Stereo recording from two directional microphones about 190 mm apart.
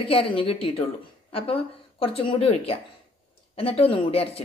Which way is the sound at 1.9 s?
30° left (ahead or behind).